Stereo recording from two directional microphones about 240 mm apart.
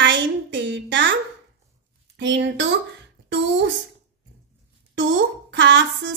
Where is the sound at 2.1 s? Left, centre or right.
Right.